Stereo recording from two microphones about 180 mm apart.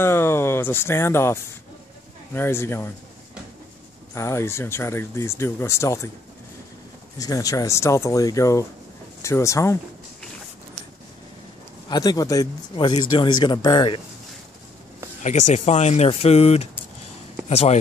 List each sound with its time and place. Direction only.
0.0 s speech: 15° left (ahead or behind)
4.1 s speech: 15° left (ahead or behind)
7.2 s speech: 20° left (ahead or behind)
11.9 s speech: 20° left (ahead or behind)
15.2 s speech: 40° left (ahead or behind)